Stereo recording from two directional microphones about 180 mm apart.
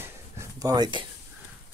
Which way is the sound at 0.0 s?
15° right (ahead or behind).